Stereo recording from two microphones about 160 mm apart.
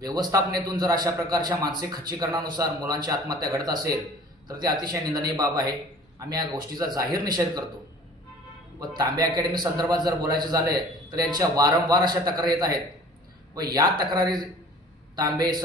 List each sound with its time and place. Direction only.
0.0 s a man's voice: 25° right (ahead or behind)
8.7 s a man's voice: 25° right (ahead or behind)